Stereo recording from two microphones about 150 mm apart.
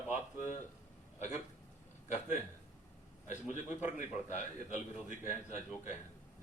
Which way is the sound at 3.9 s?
55° left (ahead or behind).